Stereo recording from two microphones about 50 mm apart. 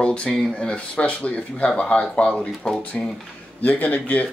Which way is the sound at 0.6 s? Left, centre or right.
Left.